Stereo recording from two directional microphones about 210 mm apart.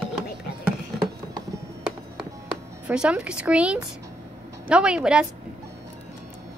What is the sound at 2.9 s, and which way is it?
A woman's voice, 5° right (ahead or behind).